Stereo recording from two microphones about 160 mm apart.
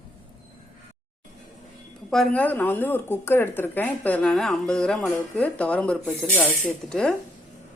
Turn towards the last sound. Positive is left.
turn(degrees=5)  # may be behind; listen again after turning